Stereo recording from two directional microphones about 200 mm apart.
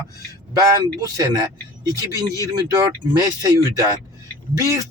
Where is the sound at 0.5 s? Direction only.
15° right (ahead or behind).